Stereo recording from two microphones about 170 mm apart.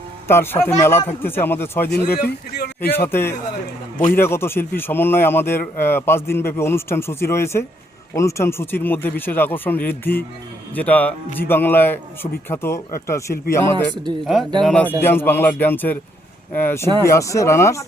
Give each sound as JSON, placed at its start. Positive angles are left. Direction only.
{"t": 0.3, "sound": "speech", "side_deg": 15}
{"t": 1.9, "sound": "a man's voice", "side_deg": 70}
{"t": 3.1, "sound": "speech", "side_deg": 15}
{"t": 3.9, "sound": "a man's voice", "side_deg": 50}
{"t": 4.2, "sound": "speech", "side_deg": 15}
{"t": 13.9, "sound": "speech", "side_deg": -25}
{"t": 14.6, "sound": "speech", "side_deg": 5}